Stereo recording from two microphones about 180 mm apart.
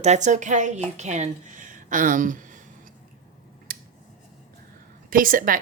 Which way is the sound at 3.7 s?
55° right (ahead or behind).